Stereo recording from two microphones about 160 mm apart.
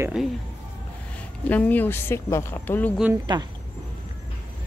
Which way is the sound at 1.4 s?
10° left (ahead or behind).